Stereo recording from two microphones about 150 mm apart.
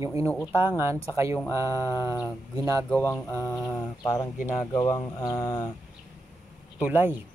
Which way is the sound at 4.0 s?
20° left (ahead or behind).